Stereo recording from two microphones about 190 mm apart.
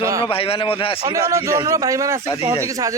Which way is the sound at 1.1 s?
15° right (ahead or behind).